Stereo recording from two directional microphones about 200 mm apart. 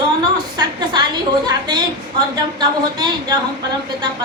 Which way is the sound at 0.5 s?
20° right (ahead or behind).